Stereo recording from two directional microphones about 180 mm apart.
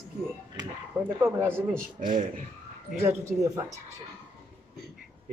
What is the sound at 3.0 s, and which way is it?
Speech, 15° right (ahead or behind).